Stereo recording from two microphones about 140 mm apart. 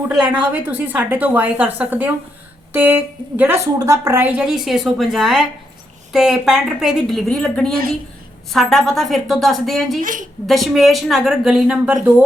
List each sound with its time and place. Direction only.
0.3 s a woman's voice: 10° right (ahead or behind)
10.0 s a woman's voice: 70° right (ahead or behind)
10.4 s a woman's voice: centre (ahead or behind)